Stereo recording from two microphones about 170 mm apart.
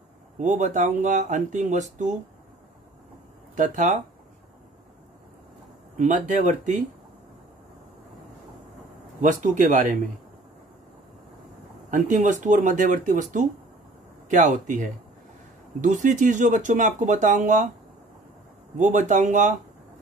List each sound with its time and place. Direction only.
0.4 s speech: 45° right (ahead or behind)
3.5 s speech: 50° right (ahead or behind)
5.9 s speech: 45° right (ahead or behind)
9.2 s speech: 50° right (ahead or behind)
11.9 s speech: 45° right (ahead or behind)
18.8 s speech: 45° right (ahead or behind)